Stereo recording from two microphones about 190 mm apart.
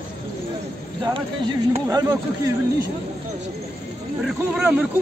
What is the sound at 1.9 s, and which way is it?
Speech, 20° right (ahead or behind).